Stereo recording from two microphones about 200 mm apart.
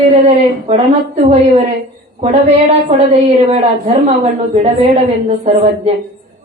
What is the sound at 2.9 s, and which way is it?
Speech, 35° right (ahead or behind).